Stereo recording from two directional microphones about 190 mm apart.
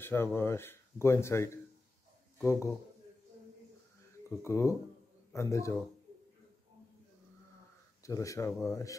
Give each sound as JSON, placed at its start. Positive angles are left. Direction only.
{"t": 0.0, "sound": "speech", "side_deg": 10}
{"t": 4.4, "sound": "speech", "side_deg": 15}
{"t": 8.0, "sound": "speech", "side_deg": 15}